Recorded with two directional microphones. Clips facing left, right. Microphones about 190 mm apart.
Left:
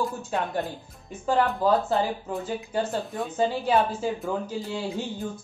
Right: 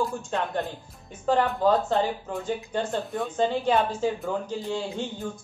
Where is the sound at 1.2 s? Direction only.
5° left (ahead or behind).